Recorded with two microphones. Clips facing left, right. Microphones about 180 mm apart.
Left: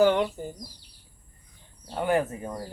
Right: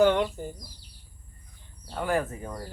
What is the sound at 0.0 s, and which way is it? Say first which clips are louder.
Bird: even; 10° left (ahead or behind).